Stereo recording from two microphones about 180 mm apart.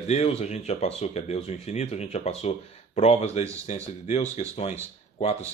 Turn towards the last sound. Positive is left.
turn(degrees=35)  # may be behind; listen again after turning